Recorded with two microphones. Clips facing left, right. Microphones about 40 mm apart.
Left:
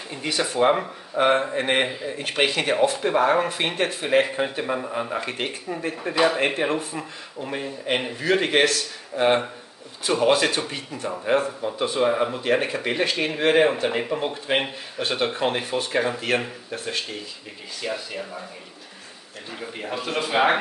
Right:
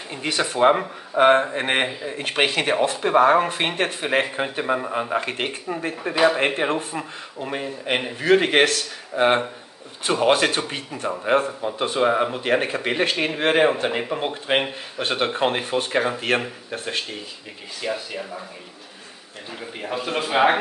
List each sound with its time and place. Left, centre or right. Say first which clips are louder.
0.4 s a man's voice: right 2 dB; right
8.2 s a man's voice: right 4 dB; right
13.8 s speech: even; centre
15.0 s a man's voice: right 2 dB; right
17.8 s speech: right 2 dB; centre
19.6 s a man's voice: right 2 dB; centre